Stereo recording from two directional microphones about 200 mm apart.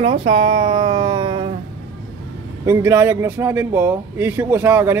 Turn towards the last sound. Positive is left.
turn(degrees=-10)  # may be behind; listen again after turning